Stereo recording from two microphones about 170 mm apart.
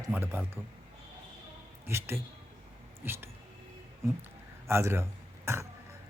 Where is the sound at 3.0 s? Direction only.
10° right (ahead or behind).